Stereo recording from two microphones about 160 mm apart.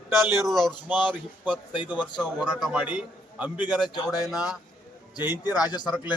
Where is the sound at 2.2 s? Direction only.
Centre (ahead or behind).